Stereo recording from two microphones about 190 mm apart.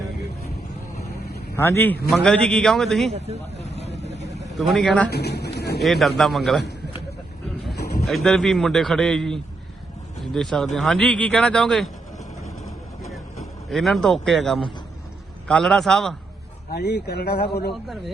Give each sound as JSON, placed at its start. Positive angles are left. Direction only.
{"t": 1.5, "sound": "a man's voice", "side_deg": 15}
{"t": 4.0, "sound": "vehicle", "side_deg": 35}
{"t": 4.5, "sound": "a man's voice", "side_deg": 0}
{"t": 5.0, "sound": "speech", "side_deg": 60}
{"t": 5.8, "sound": "a man's voice", "side_deg": 0}
{"t": 8.0, "sound": "a man's voice", "side_deg": 0}
{"t": 12.6, "sound": "vehicle", "side_deg": 0}
{"t": 15.4, "sound": "a man's voice", "side_deg": 5}
{"t": 16.7, "sound": "speech", "side_deg": 60}